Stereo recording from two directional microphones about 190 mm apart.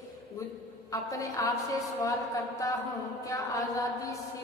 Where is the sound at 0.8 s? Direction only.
15° left (ahead or behind).